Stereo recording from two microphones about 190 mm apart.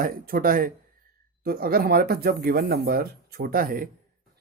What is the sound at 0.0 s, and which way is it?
Speech, 50° right (ahead or behind).